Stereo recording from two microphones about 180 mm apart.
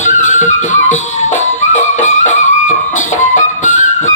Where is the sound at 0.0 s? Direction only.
45° left (ahead or behind).